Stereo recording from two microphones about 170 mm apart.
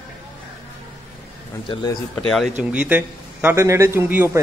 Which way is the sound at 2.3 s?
Centre (ahead or behind).